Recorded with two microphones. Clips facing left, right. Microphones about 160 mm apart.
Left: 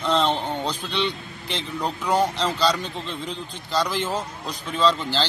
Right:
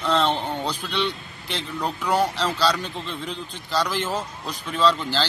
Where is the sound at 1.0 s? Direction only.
5° right (ahead or behind).